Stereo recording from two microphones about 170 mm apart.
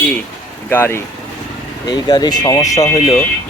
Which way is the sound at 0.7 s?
10° left (ahead or behind).